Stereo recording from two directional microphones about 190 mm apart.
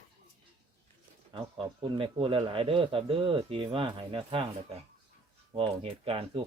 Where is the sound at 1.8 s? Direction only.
30° right (ahead or behind).